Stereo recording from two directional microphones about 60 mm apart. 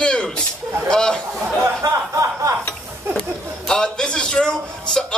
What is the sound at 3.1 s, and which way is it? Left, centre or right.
A man's voice, centre.